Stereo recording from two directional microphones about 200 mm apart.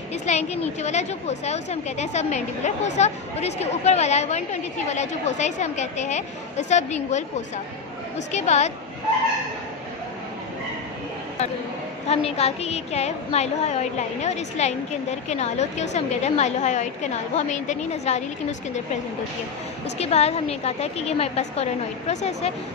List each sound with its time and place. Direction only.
0.1 s a woman's voice: 35° left (ahead or behind)
8.3 s a woman's voice: 35° left (ahead or behind)
12.1 s a woman's voice: 30° left (ahead or behind)
20.0 s a woman's voice: 30° left (ahead or behind)